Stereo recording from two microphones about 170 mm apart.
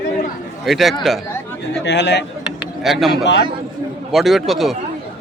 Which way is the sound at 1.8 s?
90° left.